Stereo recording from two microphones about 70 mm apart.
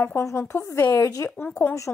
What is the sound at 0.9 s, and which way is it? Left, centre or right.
Speech, left.